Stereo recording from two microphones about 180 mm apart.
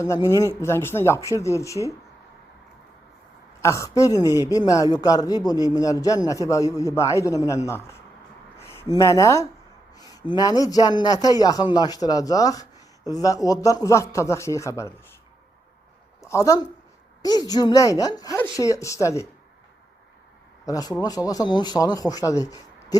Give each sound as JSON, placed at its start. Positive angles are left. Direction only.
{"t": 0.0, "sound": "a man's voice", "side_deg": 15}
{"t": 3.6, "sound": "a man's voice", "side_deg": 15}
{"t": 16.2, "sound": "a man's voice", "side_deg": 15}
{"t": 20.7, "sound": "a man's voice", "side_deg": 20}